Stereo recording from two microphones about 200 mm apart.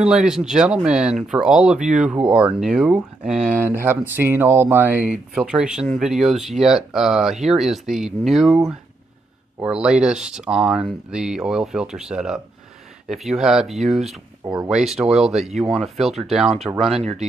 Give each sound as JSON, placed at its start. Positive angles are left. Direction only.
{"t": 0.0, "sound": "speech", "side_deg": 0}
{"t": 9.6, "sound": "speech", "side_deg": -5}
{"t": 16.9, "sound": "speech", "side_deg": -30}